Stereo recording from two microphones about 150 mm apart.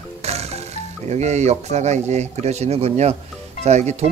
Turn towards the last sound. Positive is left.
turn(degrees=-50)  # may be behind; listen again after turning